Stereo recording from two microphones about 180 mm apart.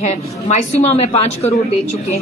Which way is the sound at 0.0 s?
40° left (ahead or behind).